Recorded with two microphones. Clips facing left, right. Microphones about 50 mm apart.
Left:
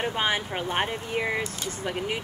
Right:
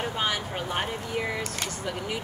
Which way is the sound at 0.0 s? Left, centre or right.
Left.